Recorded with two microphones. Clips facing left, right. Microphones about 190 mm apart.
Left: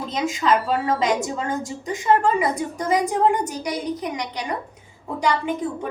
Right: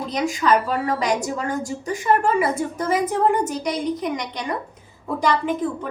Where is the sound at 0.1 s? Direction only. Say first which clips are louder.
Right 1 dB; 25° left (ahead or behind).